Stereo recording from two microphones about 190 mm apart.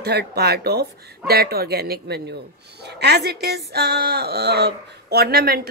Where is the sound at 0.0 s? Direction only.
60° right (ahead or behind).